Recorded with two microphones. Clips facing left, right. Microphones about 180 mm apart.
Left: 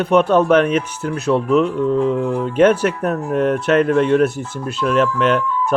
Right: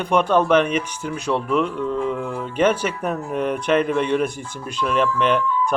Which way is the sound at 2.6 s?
5° left (ahead or behind).